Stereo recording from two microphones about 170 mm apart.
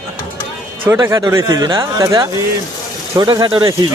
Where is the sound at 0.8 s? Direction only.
15° right (ahead or behind).